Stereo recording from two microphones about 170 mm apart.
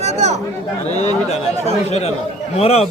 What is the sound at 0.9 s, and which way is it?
A man's voice, 40° left (ahead or behind).